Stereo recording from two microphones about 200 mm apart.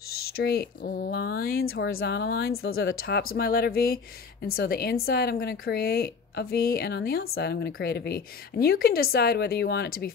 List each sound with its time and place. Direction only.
0.1 s a woman's voice: 50° left (ahead or behind)
2.7 s speech: 80° left
3.0 s a woman's voice: 50° left (ahead or behind)